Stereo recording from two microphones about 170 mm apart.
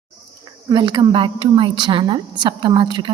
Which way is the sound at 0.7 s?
30° right (ahead or behind).